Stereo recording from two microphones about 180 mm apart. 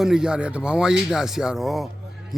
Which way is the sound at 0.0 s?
5° right (ahead or behind).